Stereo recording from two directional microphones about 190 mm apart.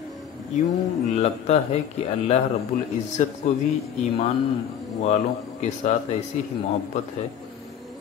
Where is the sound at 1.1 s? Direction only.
35° left (ahead or behind).